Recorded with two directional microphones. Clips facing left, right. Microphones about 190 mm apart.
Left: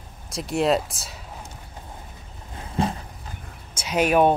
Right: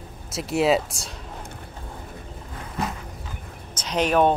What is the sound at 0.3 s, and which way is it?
Speech, centre (ahead or behind).